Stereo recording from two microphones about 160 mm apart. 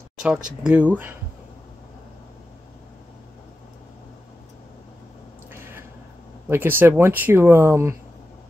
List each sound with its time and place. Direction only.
0.2 s speech: 5° right (ahead or behind)
5.5 s a sound: 15° right (ahead or behind)
6.5 s speech: 15° right (ahead or behind)